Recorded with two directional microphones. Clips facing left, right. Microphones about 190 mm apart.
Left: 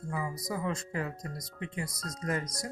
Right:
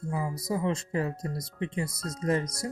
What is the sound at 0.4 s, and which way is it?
Speech, 25° right (ahead or behind).